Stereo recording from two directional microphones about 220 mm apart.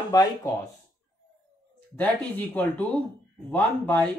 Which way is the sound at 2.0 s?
5° left (ahead or behind).